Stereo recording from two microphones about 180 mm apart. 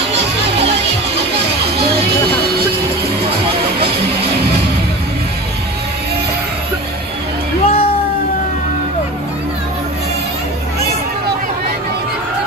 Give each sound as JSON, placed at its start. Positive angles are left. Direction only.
{"t": 7.6, "sound": "music", "side_deg": 35}